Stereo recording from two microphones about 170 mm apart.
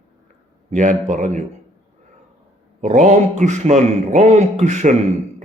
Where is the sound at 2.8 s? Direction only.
45° right (ahead or behind).